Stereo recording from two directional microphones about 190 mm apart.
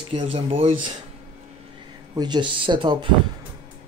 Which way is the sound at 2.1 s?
25° right (ahead or behind).